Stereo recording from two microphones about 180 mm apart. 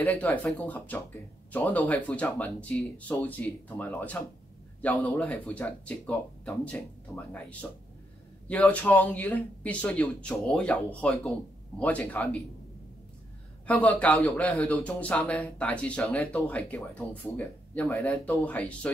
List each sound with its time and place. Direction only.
0.0 s a man's voice: 10° left (ahead or behind)
8.5 s a man's voice: 10° left (ahead or behind)
13.7 s a man's voice: 5° left (ahead or behind)